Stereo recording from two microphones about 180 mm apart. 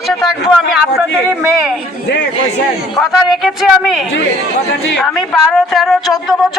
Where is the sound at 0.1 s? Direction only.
Centre (ahead or behind).